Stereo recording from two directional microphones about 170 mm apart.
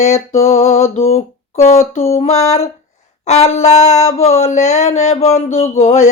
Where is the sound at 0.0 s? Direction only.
40° left (ahead or behind).